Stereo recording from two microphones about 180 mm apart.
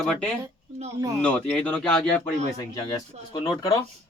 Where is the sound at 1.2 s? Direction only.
5° left (ahead or behind).